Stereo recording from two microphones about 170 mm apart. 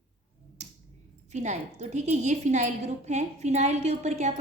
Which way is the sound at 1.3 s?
45° right (ahead or behind).